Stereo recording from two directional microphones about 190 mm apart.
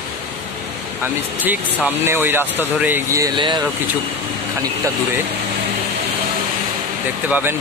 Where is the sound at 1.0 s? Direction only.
10° right (ahead or behind).